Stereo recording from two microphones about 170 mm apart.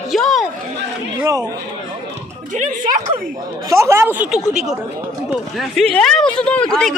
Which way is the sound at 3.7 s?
15° right (ahead or behind).